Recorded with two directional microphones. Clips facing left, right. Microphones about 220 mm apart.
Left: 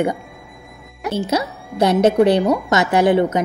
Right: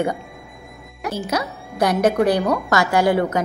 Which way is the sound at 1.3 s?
25° left (ahead or behind).